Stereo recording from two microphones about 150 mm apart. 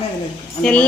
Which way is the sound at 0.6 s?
10° left (ahead or behind).